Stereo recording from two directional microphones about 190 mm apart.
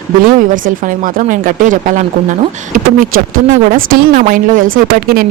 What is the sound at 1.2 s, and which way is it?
Speech, 45° right (ahead or behind).